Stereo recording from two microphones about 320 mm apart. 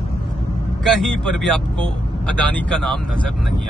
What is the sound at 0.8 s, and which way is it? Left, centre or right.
Speech, centre.